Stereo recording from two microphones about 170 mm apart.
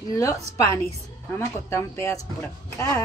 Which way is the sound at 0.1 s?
20° left (ahead or behind).